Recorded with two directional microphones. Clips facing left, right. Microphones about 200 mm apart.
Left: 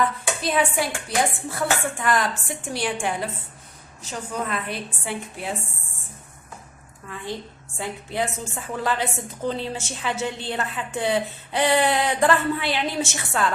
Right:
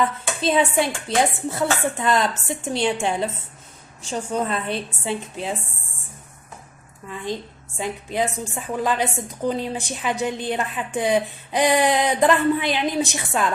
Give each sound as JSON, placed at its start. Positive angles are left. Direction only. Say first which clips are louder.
{"t": 0.0, "sound": "speech", "louder": "right 2 dB", "side_deg": -25}
{"t": 7.8, "sound": "a woman's voice", "louder": "right 3 dB", "side_deg": -15}